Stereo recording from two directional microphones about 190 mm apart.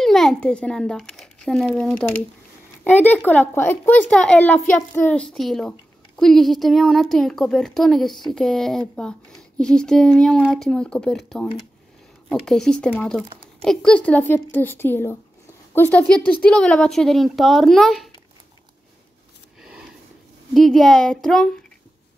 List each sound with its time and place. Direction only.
0.0 s a child's voice: centre (ahead or behind)
19.6 s a sound: centre (ahead or behind)
20.5 s speech: centre (ahead or behind)